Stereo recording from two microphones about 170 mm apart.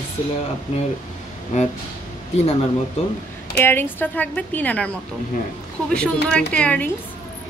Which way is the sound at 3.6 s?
10° left (ahead or behind).